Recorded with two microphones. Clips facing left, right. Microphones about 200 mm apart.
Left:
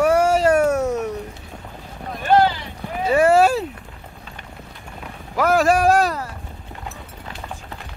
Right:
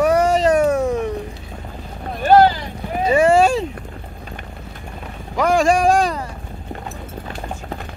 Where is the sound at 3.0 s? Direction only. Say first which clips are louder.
Right 1 dB; 5° left (ahead or behind).